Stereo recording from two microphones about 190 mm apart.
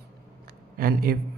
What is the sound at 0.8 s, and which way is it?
Speech, 50° right (ahead or behind).